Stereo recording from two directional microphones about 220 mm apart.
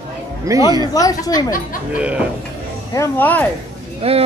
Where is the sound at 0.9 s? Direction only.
15° left (ahead or behind).